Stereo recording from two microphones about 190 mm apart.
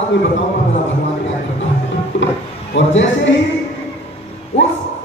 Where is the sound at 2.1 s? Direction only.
80° left.